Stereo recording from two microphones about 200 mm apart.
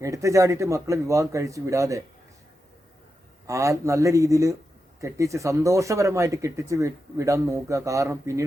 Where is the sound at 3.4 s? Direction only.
15° right (ahead or behind).